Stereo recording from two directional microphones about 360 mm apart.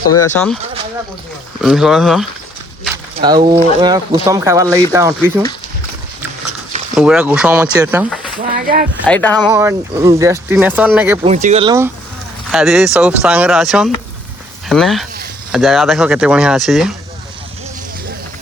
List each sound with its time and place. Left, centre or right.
0.3 s speech: centre
1.6 s speech: centre
3.2 s speech: centre
6.9 s speech: centre
8.4 s a sound: right
9.0 s speech: centre
9.5 s speech: centre
11.2 s speech: centre
12.5 s speech: centre